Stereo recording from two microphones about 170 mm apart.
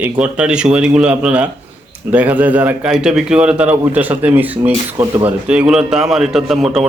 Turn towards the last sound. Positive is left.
turn(degrees=0)  # may be behind; listen again after turning